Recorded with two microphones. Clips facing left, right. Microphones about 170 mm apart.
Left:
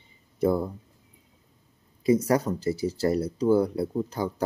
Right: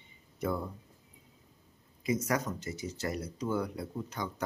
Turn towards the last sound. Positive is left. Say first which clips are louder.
# left 9 dB
turn(degrees=35)  # may be behind; listen again after turning